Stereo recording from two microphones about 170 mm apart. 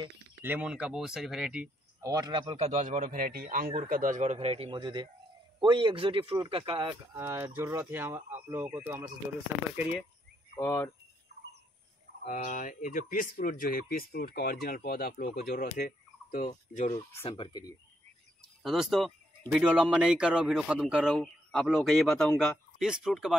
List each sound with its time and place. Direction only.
0.4 s speech: 10° right (ahead or behind)
2.0 s speech: 20° right (ahead or behind)
2.6 s speech: 40° right (ahead or behind)
7.2 s speech: 15° right (ahead or behind)
10.6 s speech: 15° left (ahead or behind)
12.3 s speech: 50° left (ahead or behind)
15.3 s turkey: 60° left (ahead or behind); by 17.0 s 45° left (ahead or behind)
17.2 s speech: 30° left (ahead or behind)
18.6 s speech: centre (ahead or behind)